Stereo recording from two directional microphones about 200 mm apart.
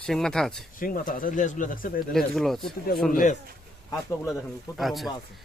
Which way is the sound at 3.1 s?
45° left (ahead or behind).